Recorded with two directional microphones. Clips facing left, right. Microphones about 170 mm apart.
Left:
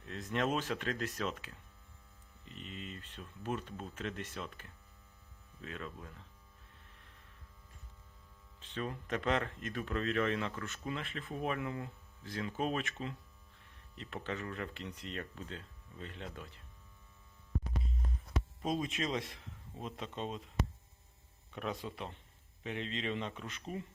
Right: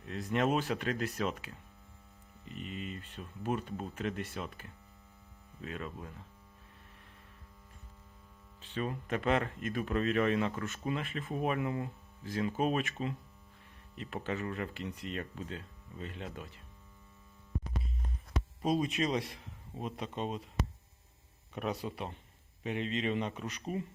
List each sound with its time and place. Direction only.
0.1 s speech: 10° right (ahead or behind)
2.6 s speech: 10° right (ahead or behind)
5.6 s speech: 10° right (ahead or behind)
8.7 s speech: 10° right (ahead or behind)
18.8 s speech: 15° right (ahead or behind)
21.5 s speech: 20° right (ahead or behind)